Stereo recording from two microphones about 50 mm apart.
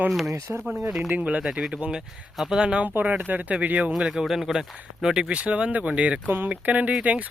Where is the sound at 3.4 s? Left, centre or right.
Right.